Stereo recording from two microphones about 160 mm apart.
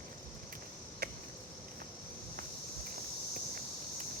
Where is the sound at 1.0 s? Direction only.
70° right (ahead or behind).